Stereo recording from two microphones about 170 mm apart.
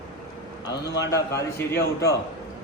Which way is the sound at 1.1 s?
15° left (ahead or behind).